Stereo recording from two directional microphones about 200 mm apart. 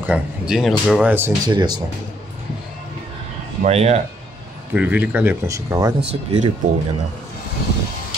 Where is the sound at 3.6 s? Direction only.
30° right (ahead or behind).